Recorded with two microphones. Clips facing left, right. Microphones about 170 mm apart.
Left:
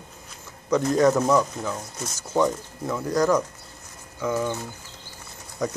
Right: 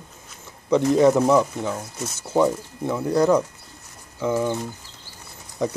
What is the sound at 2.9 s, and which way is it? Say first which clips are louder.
Speech: right 3 dB; 25° right (ahead or behind).